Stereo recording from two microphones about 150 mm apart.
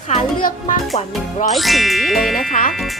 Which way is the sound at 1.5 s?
Centre (ahead or behind).